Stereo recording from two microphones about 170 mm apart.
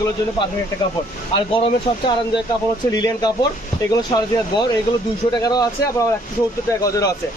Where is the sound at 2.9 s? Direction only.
20° left (ahead or behind).